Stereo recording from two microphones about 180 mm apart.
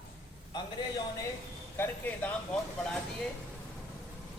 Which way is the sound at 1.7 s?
10° left (ahead or behind).